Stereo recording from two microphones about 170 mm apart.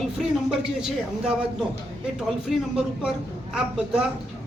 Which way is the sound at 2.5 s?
5° right (ahead or behind).